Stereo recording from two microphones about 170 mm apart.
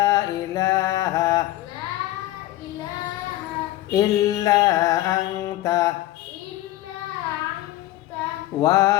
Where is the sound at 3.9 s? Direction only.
20° left (ahead or behind).